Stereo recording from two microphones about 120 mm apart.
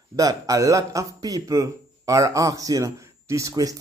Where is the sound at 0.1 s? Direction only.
30° right (ahead or behind).